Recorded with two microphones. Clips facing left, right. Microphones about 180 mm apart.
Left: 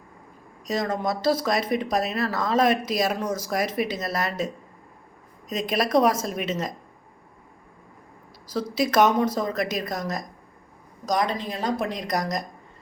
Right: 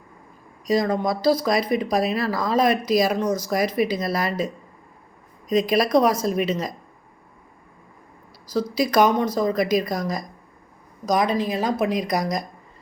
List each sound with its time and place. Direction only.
0.7 s speech: centre (ahead or behind)
8.5 s speech: 5° left (ahead or behind)